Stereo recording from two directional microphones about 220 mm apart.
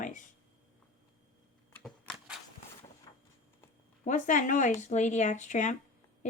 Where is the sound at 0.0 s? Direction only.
35° left (ahead or behind).